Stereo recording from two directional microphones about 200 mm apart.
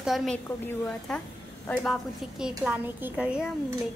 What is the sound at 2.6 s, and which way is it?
Speech, 10° right (ahead or behind).